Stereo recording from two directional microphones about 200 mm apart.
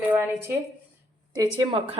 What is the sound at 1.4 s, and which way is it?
Speech, 25° right (ahead or behind).